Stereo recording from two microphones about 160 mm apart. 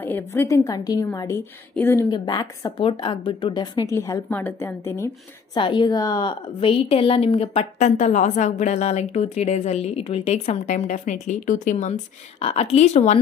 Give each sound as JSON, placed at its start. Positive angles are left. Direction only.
{"t": 0.0, "sound": "a woman's voice", "side_deg": 15}
{"t": 2.0, "sound": "a woman's voice", "side_deg": 25}
{"t": 3.9, "sound": "a woman's voice", "side_deg": 15}
{"t": 5.6, "sound": "a woman's voice", "side_deg": 30}